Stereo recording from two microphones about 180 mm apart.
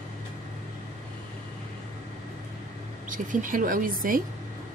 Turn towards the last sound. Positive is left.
turn(degrees=-50)  # may be behind; listen again after turning